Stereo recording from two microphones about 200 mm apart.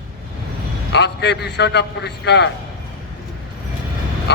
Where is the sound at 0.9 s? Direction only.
55° left (ahead or behind).